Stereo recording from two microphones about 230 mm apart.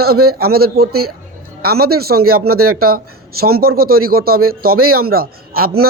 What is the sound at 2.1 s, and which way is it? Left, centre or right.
Speech, right.